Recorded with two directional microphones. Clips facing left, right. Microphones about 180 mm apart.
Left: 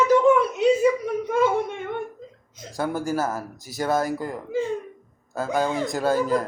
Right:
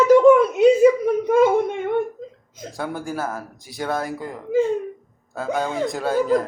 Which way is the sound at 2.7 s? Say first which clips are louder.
Left 3 dB; centre (ahead or behind).